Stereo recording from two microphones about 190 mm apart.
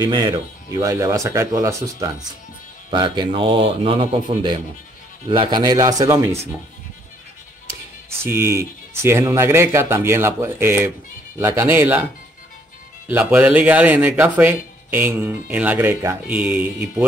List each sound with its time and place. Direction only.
0.0 s speech: 20° right (ahead or behind)
8.2 s speech: 10° right (ahead or behind)
13.1 s speech: 10° right (ahead or behind)